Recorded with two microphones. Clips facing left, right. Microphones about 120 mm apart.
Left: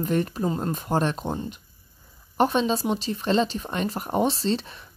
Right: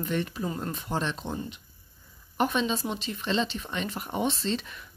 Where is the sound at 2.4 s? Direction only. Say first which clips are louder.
Left 5 dB; 35° left (ahead or behind).